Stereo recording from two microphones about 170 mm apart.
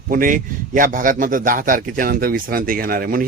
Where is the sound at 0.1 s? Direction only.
55° right (ahead or behind).